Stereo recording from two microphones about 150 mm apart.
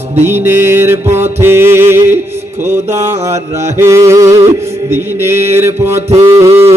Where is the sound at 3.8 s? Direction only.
20° right (ahead or behind).